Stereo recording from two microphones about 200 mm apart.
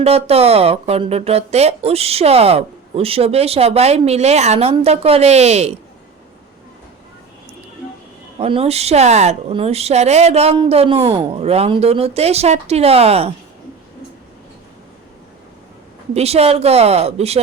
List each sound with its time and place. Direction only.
0.0 s speech: 30° right (ahead or behind)
8.4 s speech: 30° right (ahead or behind)
16.1 s speech: 30° right (ahead or behind)